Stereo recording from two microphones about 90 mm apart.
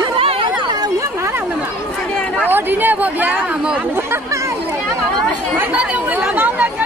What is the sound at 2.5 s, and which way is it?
Chatter, 20° right (ahead or behind).